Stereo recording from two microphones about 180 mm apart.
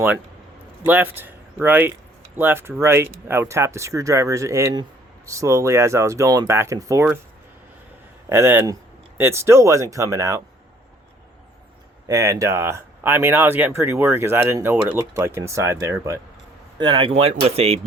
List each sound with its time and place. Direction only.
0.9 s speech: 10° right (ahead or behind)
8.3 s speech: 15° right (ahead or behind)
12.0 s speech: 20° right (ahead or behind); by 17.7 s 35° right (ahead or behind)